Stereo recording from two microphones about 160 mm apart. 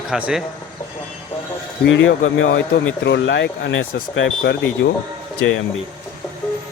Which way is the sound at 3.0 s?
90° left.